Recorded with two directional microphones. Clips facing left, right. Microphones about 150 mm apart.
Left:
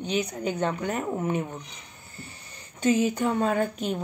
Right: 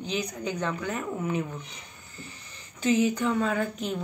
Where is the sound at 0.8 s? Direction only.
35° left (ahead or behind).